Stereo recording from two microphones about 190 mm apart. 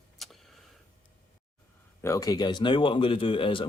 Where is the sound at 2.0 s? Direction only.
15° left (ahead or behind).